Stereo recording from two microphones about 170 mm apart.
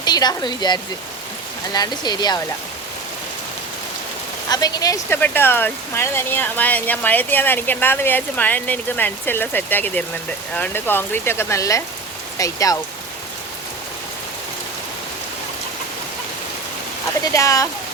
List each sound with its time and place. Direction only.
0.0 s speech: 25° left (ahead or behind)
4.4 s speech: 20° left (ahead or behind)
17.3 s speech: 20° left (ahead or behind)